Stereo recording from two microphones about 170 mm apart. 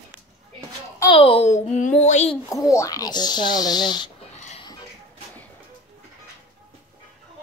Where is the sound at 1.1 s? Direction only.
35° left (ahead or behind).